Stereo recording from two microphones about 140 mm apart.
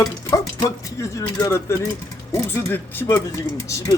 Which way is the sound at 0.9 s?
20° left (ahead or behind).